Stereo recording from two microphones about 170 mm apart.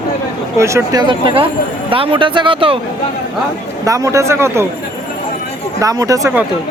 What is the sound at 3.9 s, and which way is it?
Speech, 20° right (ahead or behind).